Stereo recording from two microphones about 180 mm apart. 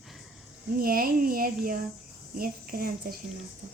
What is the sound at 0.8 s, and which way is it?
Speech, 55° right (ahead or behind).